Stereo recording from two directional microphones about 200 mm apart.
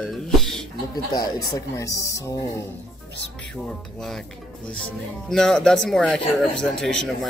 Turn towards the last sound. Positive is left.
turn(degrees=0)  # may be behind; listen again after turning